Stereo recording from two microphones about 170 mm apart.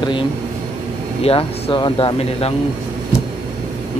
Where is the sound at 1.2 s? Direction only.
30° left (ahead or behind).